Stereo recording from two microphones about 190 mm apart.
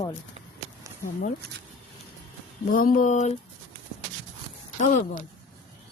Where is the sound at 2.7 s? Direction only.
45° left (ahead or behind).